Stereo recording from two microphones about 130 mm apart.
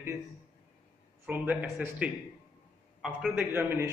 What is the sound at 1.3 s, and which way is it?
A man's voice, 15° right (ahead or behind).